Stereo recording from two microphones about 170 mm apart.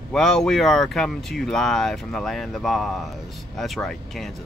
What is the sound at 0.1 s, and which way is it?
Speech, 5° left (ahead or behind).